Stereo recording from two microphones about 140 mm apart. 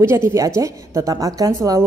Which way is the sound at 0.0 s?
20° right (ahead or behind).